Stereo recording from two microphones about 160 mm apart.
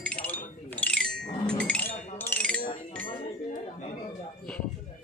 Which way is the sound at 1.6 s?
10° left (ahead or behind).